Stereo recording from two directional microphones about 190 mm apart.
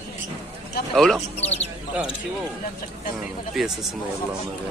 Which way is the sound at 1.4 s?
35° left (ahead or behind).